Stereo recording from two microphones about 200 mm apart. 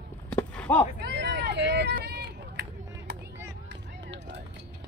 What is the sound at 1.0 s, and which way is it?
Run, 60° right (ahead or behind).